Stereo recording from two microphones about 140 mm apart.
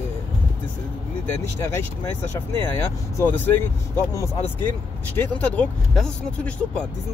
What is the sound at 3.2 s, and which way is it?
Speech, 15° left (ahead or behind).